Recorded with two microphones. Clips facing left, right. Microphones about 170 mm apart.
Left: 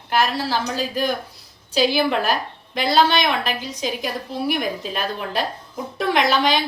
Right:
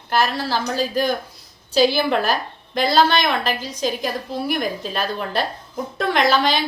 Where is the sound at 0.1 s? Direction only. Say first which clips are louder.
Even; 10° left (ahead or behind).